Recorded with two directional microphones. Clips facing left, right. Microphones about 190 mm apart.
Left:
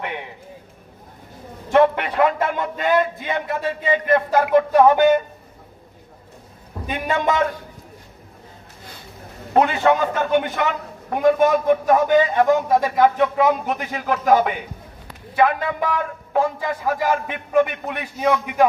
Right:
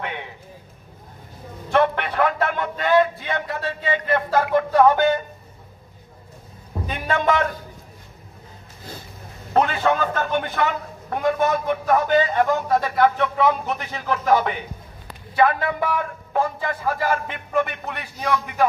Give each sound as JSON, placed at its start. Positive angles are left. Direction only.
{"t": 1.7, "sound": "a man's voice", "side_deg": 15}
{"t": 6.9, "sound": "speech", "side_deg": 15}
{"t": 9.5, "sound": "speech", "side_deg": 15}